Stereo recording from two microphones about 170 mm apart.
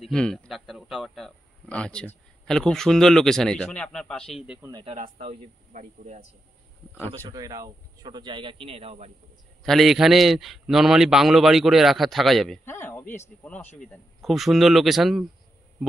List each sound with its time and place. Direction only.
0.0 s a man's voice: 5° left (ahead or behind)
4.6 s speech: 20° right (ahead or behind)
4.8 s speech: 40° right (ahead or behind)
7.2 s a man's voice: 20° right (ahead or behind); by 9.1 s 35° right (ahead or behind)
9.6 s a man's voice: centre (ahead or behind)
12.6 s speech: 10° left (ahead or behind)
14.2 s a man's voice: centre (ahead or behind)